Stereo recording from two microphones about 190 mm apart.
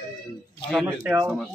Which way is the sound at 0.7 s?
5° right (ahead or behind).